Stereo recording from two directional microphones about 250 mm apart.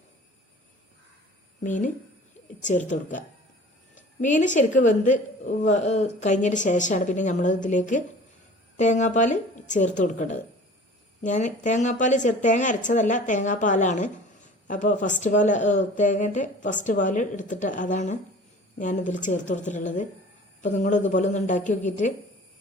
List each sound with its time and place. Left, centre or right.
1.6 s a woman's voice: left